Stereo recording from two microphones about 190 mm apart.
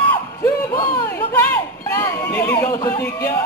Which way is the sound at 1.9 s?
20° left (ahead or behind).